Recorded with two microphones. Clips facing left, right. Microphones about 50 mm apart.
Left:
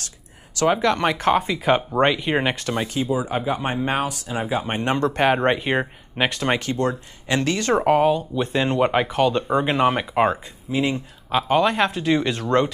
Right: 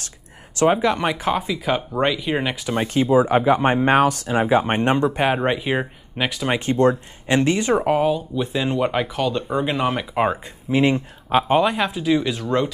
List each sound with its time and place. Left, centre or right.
0.6 s speech: centre
1.7 s speech: centre
2.6 s speech: centre
2.9 s speech: right
4.3 s speech: right
4.9 s speech: centre
6.6 s speech: right
7.7 s speech: centre
10.4 s speech: right
11.3 s speech: centre
11.7 s speech: centre